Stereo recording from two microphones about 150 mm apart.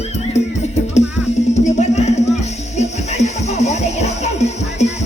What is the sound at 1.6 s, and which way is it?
Music, 50° left (ahead or behind).